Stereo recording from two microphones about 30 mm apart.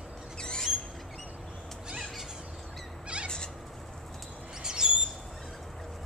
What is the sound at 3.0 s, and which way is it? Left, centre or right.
Bird, right.